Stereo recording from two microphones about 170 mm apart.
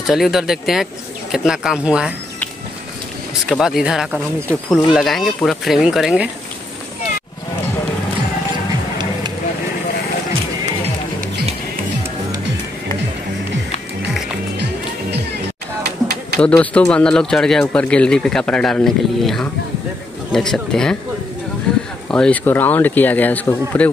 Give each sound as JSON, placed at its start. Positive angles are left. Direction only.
{"t": 0.0, "sound": "speech", "side_deg": 0}
{"t": 3.4, "sound": "speech", "side_deg": 0}
{"t": 15.8, "sound": "a sound", "side_deg": -75}
{"t": 16.3, "sound": "speech", "side_deg": 5}
{"t": 22.1, "sound": "a man's voice", "side_deg": 10}